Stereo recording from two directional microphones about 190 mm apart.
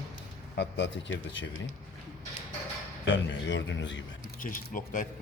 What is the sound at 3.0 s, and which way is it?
Speech, 75° left (ahead or behind).